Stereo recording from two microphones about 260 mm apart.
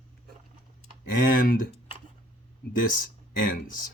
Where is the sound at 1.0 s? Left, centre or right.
Left.